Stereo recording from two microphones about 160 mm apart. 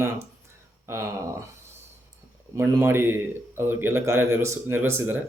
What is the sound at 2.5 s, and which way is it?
Speech, 15° right (ahead or behind).